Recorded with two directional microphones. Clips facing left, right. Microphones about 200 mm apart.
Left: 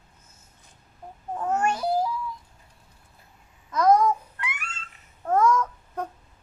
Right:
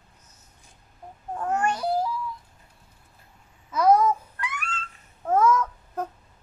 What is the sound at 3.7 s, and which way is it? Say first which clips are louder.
Babbling: even; 5° right (ahead or behind).